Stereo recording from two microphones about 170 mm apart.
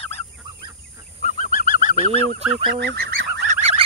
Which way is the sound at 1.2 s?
50° left (ahead or behind).